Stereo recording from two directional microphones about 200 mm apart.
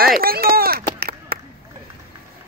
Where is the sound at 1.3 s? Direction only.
50° right (ahead or behind).